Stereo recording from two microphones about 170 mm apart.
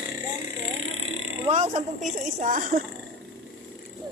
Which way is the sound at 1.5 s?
40° right (ahead or behind).